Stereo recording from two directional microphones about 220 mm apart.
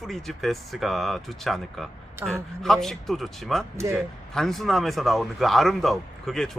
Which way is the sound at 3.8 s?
10° right (ahead or behind).